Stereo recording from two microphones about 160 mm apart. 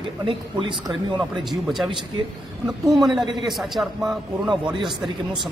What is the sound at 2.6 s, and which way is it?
A man's voice, centre (ahead or behind).